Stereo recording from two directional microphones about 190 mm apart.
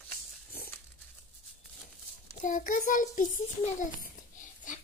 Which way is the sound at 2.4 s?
45° left (ahead or behind).